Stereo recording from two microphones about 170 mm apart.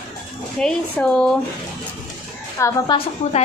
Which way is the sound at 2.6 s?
15° left (ahead or behind).